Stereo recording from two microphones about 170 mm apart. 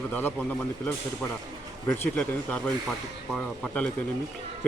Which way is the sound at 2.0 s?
5° left (ahead or behind).